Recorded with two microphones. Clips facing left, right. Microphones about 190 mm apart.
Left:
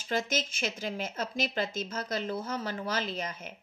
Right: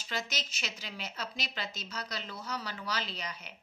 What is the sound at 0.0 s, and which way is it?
A woman's voice, 50° left (ahead or behind).